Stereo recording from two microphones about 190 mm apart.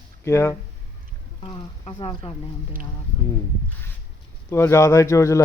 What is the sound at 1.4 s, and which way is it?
Speech, 30° left (ahead or behind).